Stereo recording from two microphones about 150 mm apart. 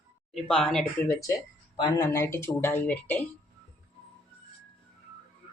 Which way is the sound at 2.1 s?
15° left (ahead or behind).